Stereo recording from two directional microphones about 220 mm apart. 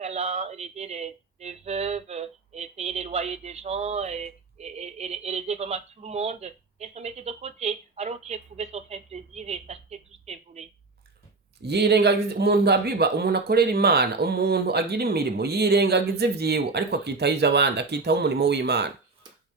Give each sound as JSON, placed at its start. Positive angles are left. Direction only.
{"t": 0.0, "sound": "speech", "side_deg": -30}
{"t": 11.6, "sound": "speech", "side_deg": -50}